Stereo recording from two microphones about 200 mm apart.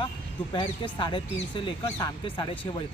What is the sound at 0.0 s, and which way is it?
Speech, 25° left (ahead or behind).